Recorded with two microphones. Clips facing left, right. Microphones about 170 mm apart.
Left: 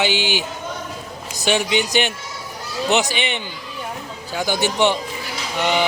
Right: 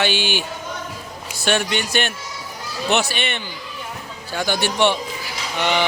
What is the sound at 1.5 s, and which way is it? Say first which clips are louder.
A man's voice: left 2 dB; 15° left (ahead or behind).